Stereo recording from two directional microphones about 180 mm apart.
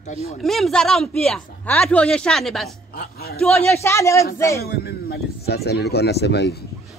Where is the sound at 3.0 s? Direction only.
60° left (ahead or behind).